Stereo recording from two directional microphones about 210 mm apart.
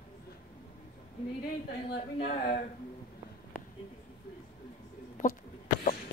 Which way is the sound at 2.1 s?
35° left (ahead or behind).